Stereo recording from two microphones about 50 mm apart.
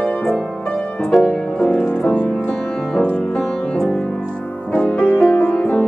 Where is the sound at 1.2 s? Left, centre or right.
Centre.